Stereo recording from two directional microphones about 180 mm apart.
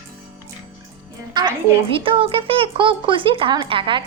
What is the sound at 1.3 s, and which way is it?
A child's voice, 25° right (ahead or behind).